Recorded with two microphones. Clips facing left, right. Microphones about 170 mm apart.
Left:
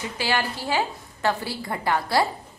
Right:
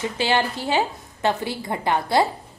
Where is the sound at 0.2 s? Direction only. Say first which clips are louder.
Right 3 dB; 20° right (ahead or behind).